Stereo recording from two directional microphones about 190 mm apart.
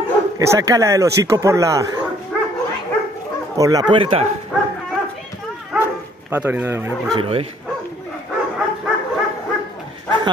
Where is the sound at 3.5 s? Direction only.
20° right (ahead or behind).